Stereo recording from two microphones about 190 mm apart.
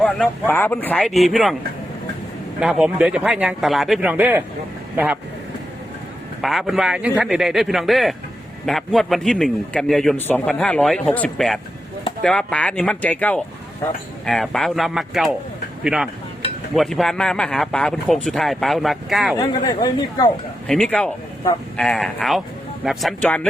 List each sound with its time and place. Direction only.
0.0 s a man's voice: 10° left (ahead or behind)
2.6 s a man's voice: 5° right (ahead or behind)
6.4 s a man's voice: centre (ahead or behind)
19.4 s speech: 20° left (ahead or behind)
20.7 s a man's voice: 5° left (ahead or behind)